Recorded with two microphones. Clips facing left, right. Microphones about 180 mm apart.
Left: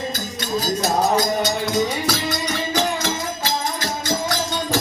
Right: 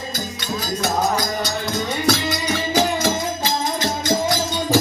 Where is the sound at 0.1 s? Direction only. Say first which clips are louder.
Left 2 dB; 40° left (ahead or behind).